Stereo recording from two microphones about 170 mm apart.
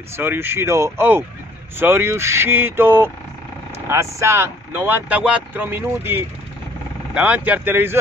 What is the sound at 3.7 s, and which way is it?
Vehicle, 15° right (ahead or behind).